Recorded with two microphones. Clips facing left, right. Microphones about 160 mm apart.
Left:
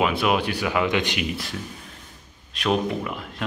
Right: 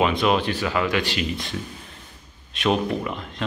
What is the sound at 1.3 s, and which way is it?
Speech, 5° left (ahead or behind).